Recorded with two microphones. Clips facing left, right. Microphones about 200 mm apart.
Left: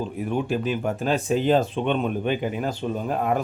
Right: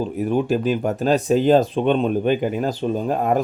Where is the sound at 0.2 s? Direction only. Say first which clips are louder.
Right 6 dB; 40° right (ahead or behind).